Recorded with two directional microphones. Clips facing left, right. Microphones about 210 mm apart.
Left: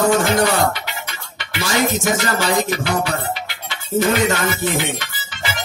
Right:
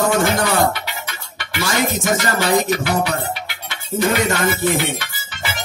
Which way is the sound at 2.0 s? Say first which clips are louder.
Right 1 dB; 50° right (ahead or behind).